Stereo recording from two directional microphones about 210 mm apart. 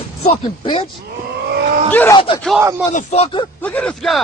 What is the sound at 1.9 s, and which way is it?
Speech, 10° left (ahead or behind).